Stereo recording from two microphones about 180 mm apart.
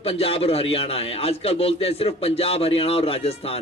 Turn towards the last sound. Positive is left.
turn(degrees=35)  # may be behind; listen again after turning